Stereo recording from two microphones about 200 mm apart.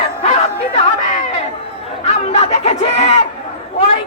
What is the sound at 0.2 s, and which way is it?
Music, 30° left (ahead or behind).